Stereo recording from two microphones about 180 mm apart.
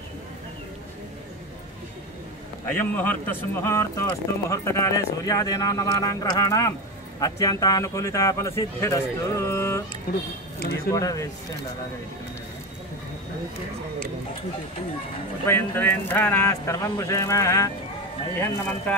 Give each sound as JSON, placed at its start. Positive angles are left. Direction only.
{"t": 2.6, "sound": "speech", "side_deg": 10}
{"t": 10.9, "sound": "speech", "side_deg": 20}
{"t": 15.4, "sound": "speech", "side_deg": 10}